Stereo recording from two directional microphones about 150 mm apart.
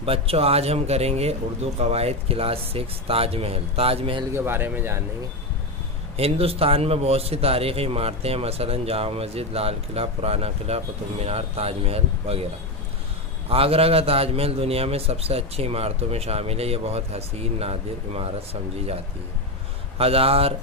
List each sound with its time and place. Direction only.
0.0 s a man's voice: 40° right (ahead or behind)
4.3 s speech: 15° right (ahead or behind)
6.1 s a man's voice: 40° right (ahead or behind)
13.5 s a man's voice: 40° right (ahead or behind)
20.0 s a man's voice: 40° right (ahead or behind)